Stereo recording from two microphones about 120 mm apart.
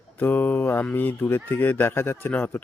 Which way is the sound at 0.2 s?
15° left (ahead or behind).